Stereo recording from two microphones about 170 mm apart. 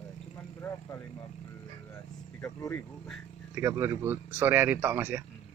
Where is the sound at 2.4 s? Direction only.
10° left (ahead or behind).